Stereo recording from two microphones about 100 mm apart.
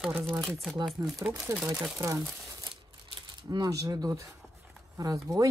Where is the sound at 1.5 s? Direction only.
25° right (ahead or behind).